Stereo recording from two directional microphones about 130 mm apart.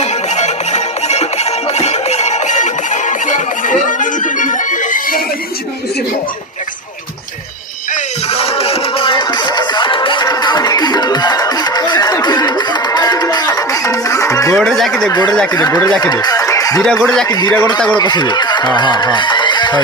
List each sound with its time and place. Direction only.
0.0 s music: 60° left (ahead or behind); by 5.2 s 90° left
8.3 s music: 50° left (ahead or behind); by 14.6 s 25° left (ahead or behind)
14.6 s a sound: 5° left (ahead or behind)
15.1 s speech: 30° left (ahead or behind)
16.8 s speech: 5° left (ahead or behind)
17.2 s speech: 30° left (ahead or behind)